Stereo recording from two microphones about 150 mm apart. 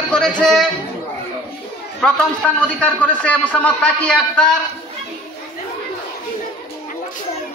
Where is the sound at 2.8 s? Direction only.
10° left (ahead or behind).